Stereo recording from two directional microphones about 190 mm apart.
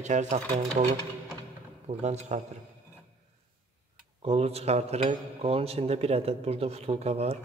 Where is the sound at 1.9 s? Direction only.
35° right (ahead or behind).